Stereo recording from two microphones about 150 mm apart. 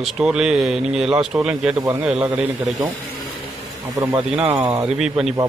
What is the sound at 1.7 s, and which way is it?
Speech, 20° right (ahead or behind).